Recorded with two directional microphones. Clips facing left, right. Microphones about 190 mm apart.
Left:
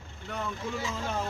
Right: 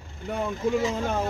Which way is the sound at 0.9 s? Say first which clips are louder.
Right 6 dB; 40° right (ahead or behind).